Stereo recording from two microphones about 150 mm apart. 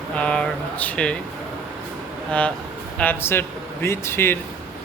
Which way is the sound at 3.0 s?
15° left (ahead or behind).